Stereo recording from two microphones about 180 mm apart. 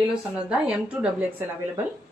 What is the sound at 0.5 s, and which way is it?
A woman's voice, 5° right (ahead or behind).